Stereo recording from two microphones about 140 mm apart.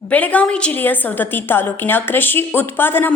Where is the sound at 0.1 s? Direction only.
10° left (ahead or behind).